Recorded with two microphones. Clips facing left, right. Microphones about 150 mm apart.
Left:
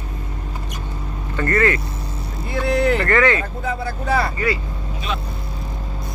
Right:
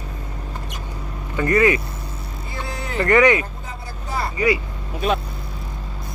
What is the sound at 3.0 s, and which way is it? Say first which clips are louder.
Speech: right 2 dB; 15° right (ahead or behind).